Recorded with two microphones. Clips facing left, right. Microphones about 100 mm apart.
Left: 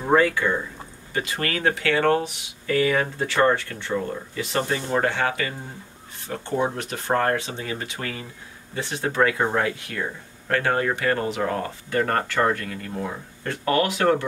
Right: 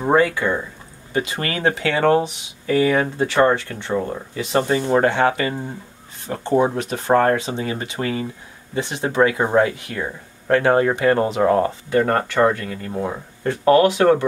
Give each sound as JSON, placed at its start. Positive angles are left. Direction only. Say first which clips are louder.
{"t": 0.0, "sound": "speech", "louder": "right 2 dB", "side_deg": -20}
{"t": 4.8, "sound": "speech", "louder": "right 6 dB", "side_deg": -35}